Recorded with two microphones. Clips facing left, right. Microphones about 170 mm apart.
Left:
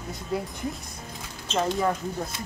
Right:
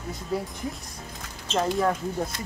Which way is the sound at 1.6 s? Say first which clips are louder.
Right 1 dB; centre (ahead or behind).